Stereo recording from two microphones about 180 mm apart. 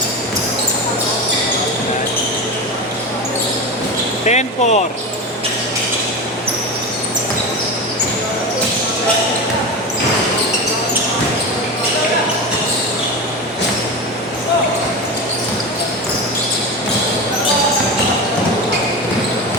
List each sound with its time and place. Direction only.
4.3 s speech: 40° left (ahead or behind)